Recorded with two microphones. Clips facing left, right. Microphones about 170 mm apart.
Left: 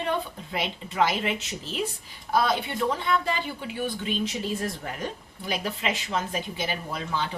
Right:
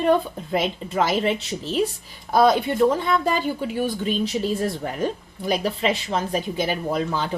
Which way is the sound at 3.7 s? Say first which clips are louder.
Right 2 dB; 40° right (ahead or behind).